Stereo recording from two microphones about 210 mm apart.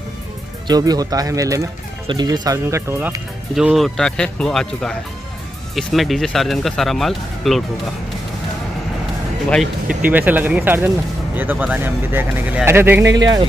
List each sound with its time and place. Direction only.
0.7 s speech: 20° right (ahead or behind)
3.5 s speech: centre (ahead or behind)
5.8 s speech: centre (ahead or behind)
9.5 s speech: 5° right (ahead or behind); by 13.5 s 20° right (ahead or behind)